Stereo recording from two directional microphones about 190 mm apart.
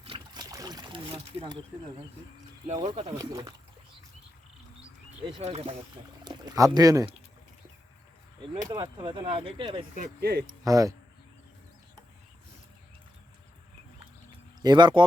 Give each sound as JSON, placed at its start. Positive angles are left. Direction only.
{"t": 0.0, "sound": "boat", "side_deg": -30}
{"t": 0.5, "sound": "a sound", "side_deg": -20}
{"t": 2.6, "sound": "speech", "side_deg": -30}
{"t": 5.2, "sound": "speech", "side_deg": -30}
{"t": 6.2, "sound": "speech", "side_deg": -20}
{"t": 8.7, "sound": "speech", "side_deg": -25}
{"t": 9.9, "sound": "speech", "side_deg": -50}
{"t": 10.6, "sound": "speech", "side_deg": -15}
{"t": 14.6, "sound": "speech", "side_deg": -20}